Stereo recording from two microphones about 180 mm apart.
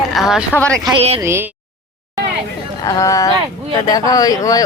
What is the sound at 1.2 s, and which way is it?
Speech, 15° right (ahead or behind).